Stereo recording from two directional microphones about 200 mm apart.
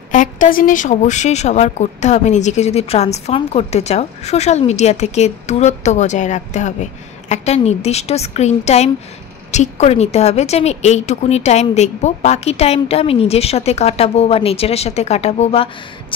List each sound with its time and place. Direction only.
0.1 s speech: 40° left (ahead or behind)